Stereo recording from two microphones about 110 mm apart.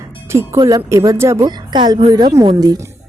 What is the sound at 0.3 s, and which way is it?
Speech, 25° right (ahead or behind).